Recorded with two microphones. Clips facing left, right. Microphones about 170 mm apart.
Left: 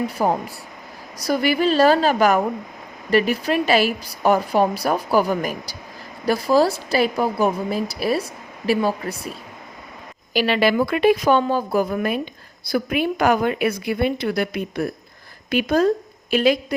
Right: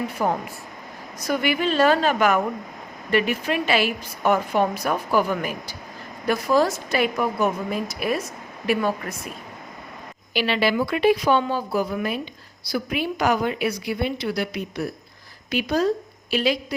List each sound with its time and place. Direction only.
0.2 s a woman's voice: 35° left (ahead or behind)
10.3 s a woman's voice: 45° left (ahead or behind)